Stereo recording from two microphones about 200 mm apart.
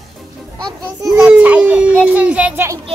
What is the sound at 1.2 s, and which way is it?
Speech, 5° right (ahead or behind).